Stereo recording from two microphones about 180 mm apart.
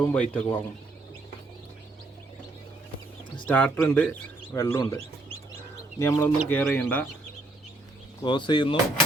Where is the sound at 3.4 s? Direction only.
10° left (ahead or behind).